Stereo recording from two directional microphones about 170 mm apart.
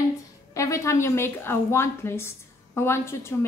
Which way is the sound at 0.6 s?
20° left (ahead or behind).